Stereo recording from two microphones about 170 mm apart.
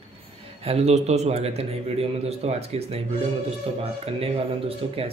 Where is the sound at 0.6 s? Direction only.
40° right (ahead or behind).